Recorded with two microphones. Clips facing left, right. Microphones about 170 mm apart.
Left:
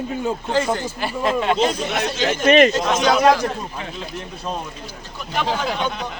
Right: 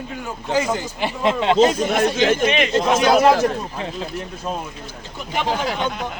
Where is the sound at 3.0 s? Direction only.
5° right (ahead or behind).